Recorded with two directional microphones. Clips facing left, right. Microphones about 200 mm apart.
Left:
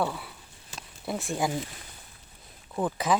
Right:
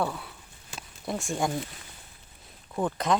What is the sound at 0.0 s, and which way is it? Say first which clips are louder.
Speech: even; centre (ahead or behind).